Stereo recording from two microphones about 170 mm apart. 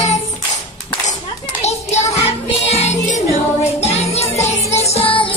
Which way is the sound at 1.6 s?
40° left (ahead or behind).